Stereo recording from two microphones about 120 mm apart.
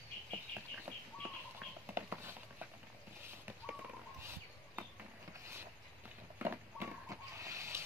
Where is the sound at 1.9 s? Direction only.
15° right (ahead or behind).